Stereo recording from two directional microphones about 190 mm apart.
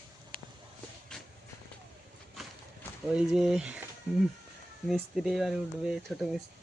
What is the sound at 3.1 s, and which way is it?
Speech, 5° right (ahead or behind).